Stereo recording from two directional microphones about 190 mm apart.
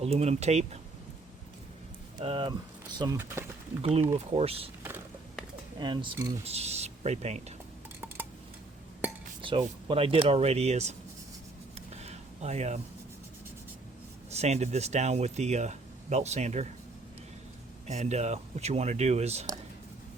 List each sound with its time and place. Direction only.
0.0 s speech: 35° right (ahead or behind)
2.1 s speech: 25° right (ahead or behind)
3.8 s speech: 30° right (ahead or behind)
5.8 s speech: 20° right (ahead or behind)
9.4 s speech: 25° right (ahead or behind)
11.9 s a sound: 35° right (ahead or behind)
14.3 s speech: 35° right (ahead or behind)
17.8 s speech: 35° right (ahead or behind)